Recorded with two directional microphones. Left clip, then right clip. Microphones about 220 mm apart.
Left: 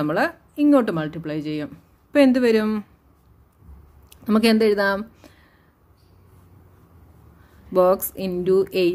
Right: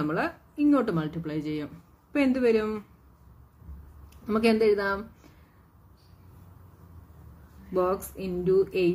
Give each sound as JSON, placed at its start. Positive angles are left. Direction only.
{"t": 0.0, "sound": "speech", "side_deg": 45}
{"t": 4.3, "sound": "speech", "side_deg": 45}
{"t": 7.7, "sound": "speech", "side_deg": 45}